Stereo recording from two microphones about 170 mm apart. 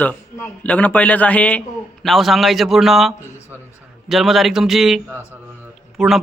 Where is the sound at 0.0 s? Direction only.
5° left (ahead or behind).